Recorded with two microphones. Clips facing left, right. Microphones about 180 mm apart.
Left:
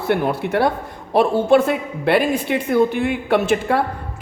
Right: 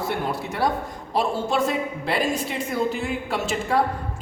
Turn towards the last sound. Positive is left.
turn(degrees=60)  # may be behind; listen again after turning